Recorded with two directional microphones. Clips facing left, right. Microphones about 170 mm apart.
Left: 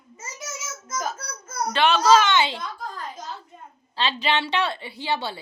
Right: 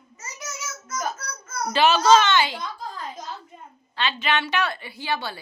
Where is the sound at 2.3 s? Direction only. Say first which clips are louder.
Even; 25° left (ahead or behind).